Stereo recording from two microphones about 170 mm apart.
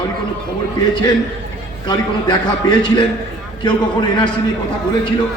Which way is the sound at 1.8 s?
25° left (ahead or behind).